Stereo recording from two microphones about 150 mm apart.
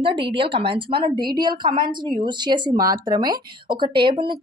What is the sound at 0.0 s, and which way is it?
Speech, 35° right (ahead or behind).